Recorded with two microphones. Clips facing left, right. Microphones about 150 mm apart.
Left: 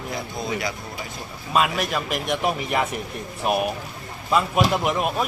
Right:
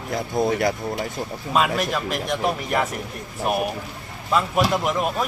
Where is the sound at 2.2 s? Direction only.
15° left (ahead or behind).